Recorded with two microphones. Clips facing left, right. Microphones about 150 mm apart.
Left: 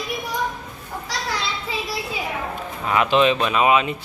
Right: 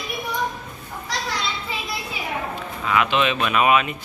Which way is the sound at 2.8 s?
35° left (ahead or behind).